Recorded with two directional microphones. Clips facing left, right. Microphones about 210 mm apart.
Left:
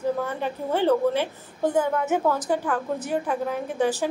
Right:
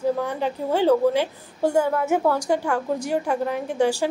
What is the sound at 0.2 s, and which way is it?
A woman's voice, 15° right (ahead or behind).